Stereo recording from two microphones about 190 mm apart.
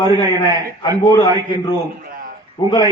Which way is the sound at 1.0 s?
20° left (ahead or behind).